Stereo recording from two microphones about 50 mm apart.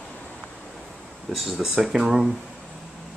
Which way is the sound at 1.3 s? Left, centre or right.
Centre.